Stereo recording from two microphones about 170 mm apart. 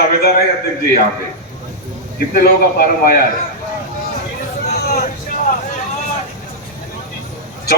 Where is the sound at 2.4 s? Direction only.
60° left (ahead or behind).